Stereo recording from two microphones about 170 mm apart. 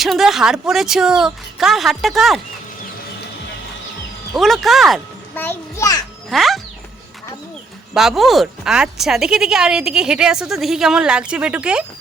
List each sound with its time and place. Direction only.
0.0 s speech: centre (ahead or behind)
4.4 s speech: centre (ahead or behind)
5.3 s a child's voice: 10° left (ahead or behind)
6.3 s speech: centre (ahead or behind)
7.9 s speech: centre (ahead or behind)